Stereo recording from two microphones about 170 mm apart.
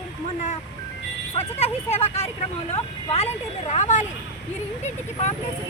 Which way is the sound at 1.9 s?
40° left (ahead or behind).